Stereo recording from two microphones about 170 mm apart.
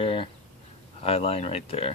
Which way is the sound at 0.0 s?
30° left (ahead or behind).